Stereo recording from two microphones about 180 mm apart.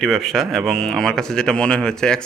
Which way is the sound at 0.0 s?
Centre (ahead or behind).